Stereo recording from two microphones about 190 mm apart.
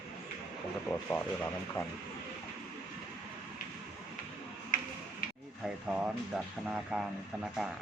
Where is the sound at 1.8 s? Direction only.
15° left (ahead or behind).